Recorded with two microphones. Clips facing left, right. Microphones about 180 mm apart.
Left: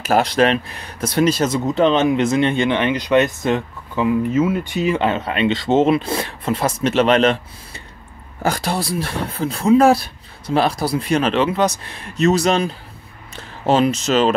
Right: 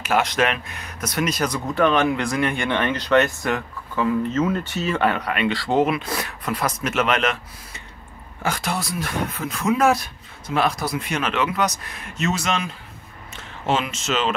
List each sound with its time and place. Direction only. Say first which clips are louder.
0.0 s speech: left 5 dB; 35° left (ahead or behind)